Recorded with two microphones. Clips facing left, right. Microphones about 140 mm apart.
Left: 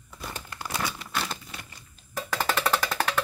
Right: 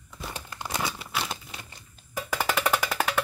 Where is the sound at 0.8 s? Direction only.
10° right (ahead or behind).